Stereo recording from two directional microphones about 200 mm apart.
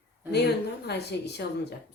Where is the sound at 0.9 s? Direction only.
55° left (ahead or behind).